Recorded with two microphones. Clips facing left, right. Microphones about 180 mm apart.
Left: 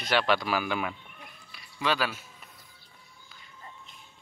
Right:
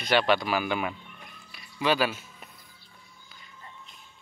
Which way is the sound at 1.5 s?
5° right (ahead or behind).